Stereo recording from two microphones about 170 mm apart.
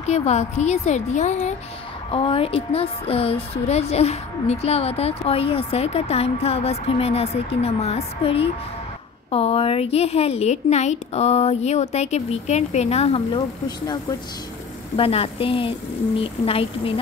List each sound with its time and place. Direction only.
0.1 s speech: 40° left (ahead or behind)
2.1 s speech: 35° left (ahead or behind)
15.0 s speech: 35° left (ahead or behind)